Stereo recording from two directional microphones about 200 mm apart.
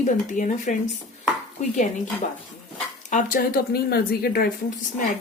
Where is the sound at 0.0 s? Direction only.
40° left (ahead or behind).